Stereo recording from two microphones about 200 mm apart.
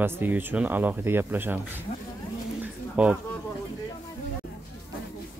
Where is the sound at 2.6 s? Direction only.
5° right (ahead or behind).